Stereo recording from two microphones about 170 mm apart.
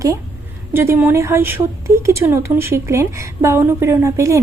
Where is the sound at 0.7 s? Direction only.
15° right (ahead or behind).